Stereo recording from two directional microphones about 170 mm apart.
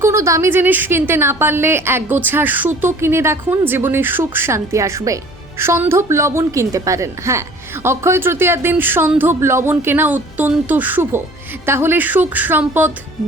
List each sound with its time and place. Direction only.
0.0 s a woman's voice: 15° right (ahead or behind)